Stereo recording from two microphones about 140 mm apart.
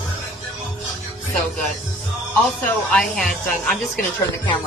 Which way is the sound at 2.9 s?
5° left (ahead or behind).